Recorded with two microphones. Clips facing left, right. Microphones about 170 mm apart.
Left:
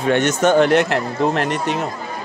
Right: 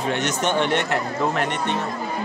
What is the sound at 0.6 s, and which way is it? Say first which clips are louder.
Speech: left 8 dB; 90° left.